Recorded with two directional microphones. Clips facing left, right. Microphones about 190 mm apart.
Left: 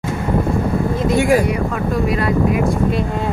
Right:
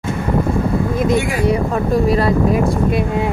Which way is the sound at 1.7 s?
35° right (ahead or behind).